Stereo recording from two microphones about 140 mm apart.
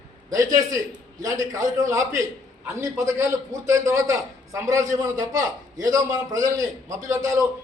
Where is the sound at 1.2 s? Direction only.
25° right (ahead or behind).